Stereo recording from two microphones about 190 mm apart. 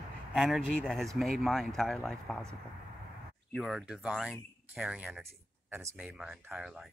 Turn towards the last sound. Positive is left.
turn(degrees=-5)  # may be behind; listen again after turning